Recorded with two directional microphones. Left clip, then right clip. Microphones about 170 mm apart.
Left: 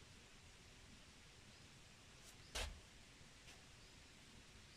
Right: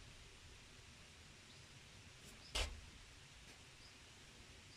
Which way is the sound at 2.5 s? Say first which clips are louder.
Right 5 dB; 10° right (ahead or behind).